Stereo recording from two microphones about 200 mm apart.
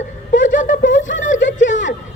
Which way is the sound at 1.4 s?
65° left (ahead or behind).